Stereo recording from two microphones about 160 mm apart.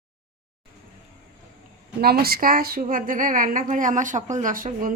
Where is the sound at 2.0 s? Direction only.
75° right (ahead or behind).